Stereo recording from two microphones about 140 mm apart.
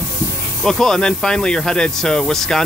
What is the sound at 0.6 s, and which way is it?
Speech, 5° left (ahead or behind).